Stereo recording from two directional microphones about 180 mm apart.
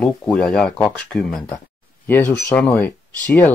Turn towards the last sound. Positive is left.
turn(degrees=10)  # may be behind; listen again after turning